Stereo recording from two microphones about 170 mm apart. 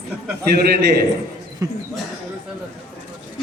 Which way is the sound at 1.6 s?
20° right (ahead or behind).